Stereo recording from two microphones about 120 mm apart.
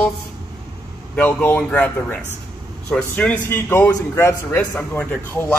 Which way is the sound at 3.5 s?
20° left (ahead or behind).